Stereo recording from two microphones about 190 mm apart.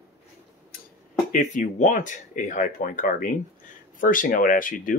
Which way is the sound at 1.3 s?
40° left (ahead or behind).